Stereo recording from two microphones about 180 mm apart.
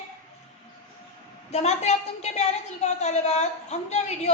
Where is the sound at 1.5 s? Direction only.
40° left (ahead or behind).